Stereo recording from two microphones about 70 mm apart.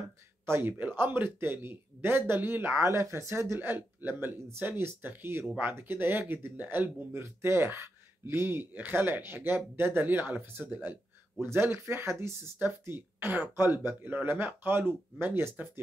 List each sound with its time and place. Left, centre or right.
0.5 s speech: right
2.8 s speech: right
12.6 s speech: right